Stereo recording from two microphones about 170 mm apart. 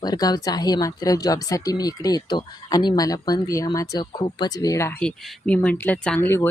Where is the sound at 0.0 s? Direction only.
25° left (ahead or behind).